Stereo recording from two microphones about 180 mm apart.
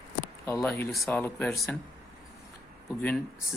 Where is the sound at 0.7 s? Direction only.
Centre (ahead or behind).